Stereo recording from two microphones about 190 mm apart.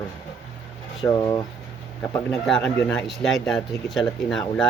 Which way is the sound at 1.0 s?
15° left (ahead or behind).